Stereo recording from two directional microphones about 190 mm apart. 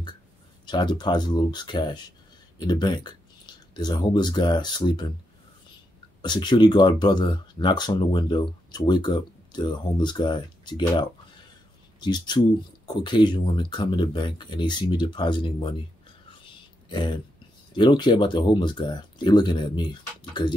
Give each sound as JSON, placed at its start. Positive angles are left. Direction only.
{"t": 0.7, "sound": "speech", "side_deg": 25}
{"t": 6.2, "sound": "speech", "side_deg": 25}
{"t": 16.9, "sound": "speech", "side_deg": 25}